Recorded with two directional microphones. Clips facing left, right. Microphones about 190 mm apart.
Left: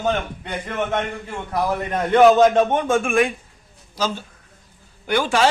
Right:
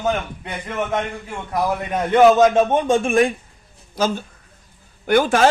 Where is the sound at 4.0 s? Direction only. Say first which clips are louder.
Right 4 dB; 50° right (ahead or behind).